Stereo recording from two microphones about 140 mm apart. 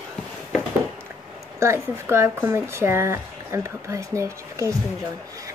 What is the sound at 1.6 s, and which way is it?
Speech, 20° right (ahead or behind).